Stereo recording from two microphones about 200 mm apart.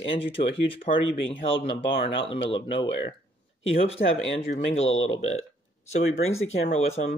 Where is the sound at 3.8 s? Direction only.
30° left (ahead or behind).